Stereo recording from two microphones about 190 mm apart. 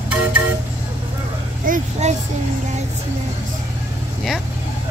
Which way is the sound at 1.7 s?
35° right (ahead or behind).